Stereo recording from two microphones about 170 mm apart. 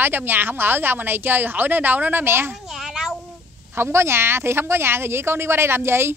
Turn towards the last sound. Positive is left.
turn(degrees=-15)  # may be behind; listen again after turning